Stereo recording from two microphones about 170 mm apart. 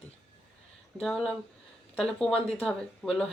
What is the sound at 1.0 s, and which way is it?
Speech, 5° left (ahead or behind).